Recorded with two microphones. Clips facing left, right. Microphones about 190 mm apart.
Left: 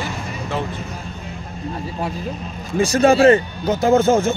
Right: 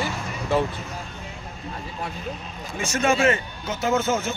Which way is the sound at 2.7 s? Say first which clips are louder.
Left 8 dB; 35° left (ahead or behind).